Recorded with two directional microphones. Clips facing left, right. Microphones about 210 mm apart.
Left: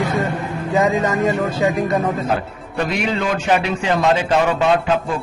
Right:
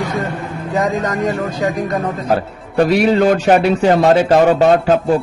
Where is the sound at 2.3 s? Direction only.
40° right (ahead or behind).